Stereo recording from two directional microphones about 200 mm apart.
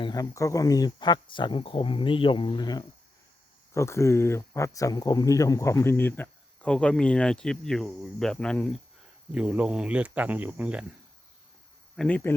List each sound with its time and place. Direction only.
0.0 s speech: 20° left (ahead or behind); by 10.8 s 5° right (ahead or behind)
11.9 s speech: 5° left (ahead or behind)